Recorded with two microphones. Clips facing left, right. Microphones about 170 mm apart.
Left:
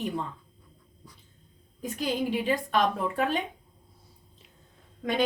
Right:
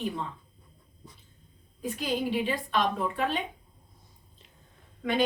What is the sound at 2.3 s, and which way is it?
A woman's voice, 45° left (ahead or behind).